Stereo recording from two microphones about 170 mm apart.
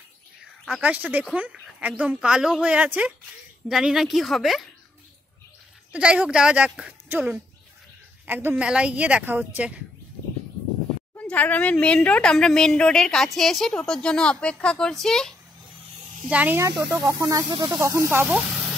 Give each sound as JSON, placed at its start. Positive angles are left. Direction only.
{"t": 0.7, "sound": "speech", "side_deg": -5}
{"t": 5.9, "sound": "speech", "side_deg": -5}
{"t": 11.1, "sound": "a woman's voice", "side_deg": 10}
{"t": 16.3, "sound": "speech", "side_deg": -10}